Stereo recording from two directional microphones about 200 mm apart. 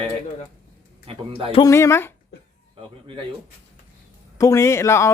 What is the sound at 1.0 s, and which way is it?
Speech, 30° right (ahead or behind).